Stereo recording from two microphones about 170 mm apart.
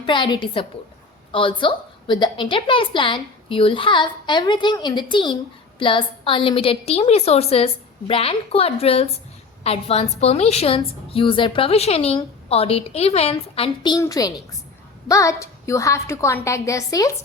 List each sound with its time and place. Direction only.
0.0 s a woman's voice: 30° left (ahead or behind)